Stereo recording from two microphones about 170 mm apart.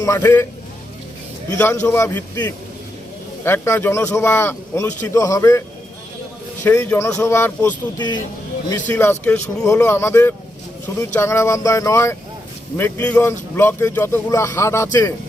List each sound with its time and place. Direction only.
0.0 s speech: 15° left (ahead or behind)
1.5 s speech: 15° left (ahead or behind)
6.7 s speech: 15° left (ahead or behind)
7.9 s speech: 25° left (ahead or behind)
8.9 s speech: 10° left (ahead or behind)